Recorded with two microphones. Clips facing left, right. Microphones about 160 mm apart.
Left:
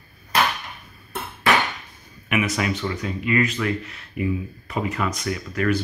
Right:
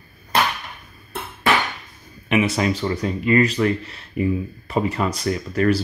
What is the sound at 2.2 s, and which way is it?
Speech, 30° right (ahead or behind).